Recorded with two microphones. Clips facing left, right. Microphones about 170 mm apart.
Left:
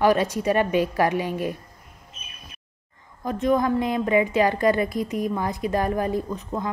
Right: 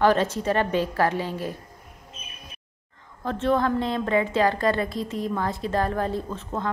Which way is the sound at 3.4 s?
15° left (ahead or behind).